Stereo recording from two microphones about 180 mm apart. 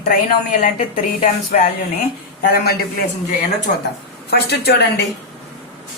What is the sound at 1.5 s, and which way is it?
Speech, 45° left (ahead or behind).